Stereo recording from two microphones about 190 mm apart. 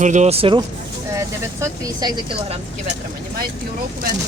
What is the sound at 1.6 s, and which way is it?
Speech, 20° right (ahead or behind).